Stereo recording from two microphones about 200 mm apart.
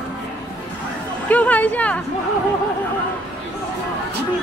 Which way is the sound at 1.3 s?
10° left (ahead or behind).